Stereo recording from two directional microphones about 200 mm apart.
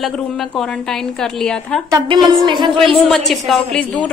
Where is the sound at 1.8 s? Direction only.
20° right (ahead or behind).